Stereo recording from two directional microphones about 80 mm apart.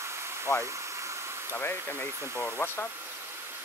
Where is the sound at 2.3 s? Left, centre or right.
Left.